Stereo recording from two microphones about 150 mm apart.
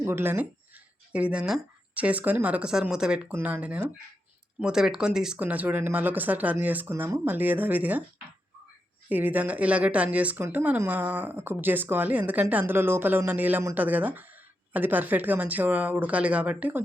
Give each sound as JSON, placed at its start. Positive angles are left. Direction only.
{"t": 0.0, "sound": "speech", "side_deg": -15}
{"t": 9.0, "sound": "speech", "side_deg": -10}